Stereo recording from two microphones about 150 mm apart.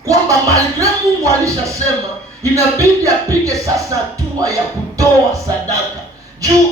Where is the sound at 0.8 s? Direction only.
20° right (ahead or behind).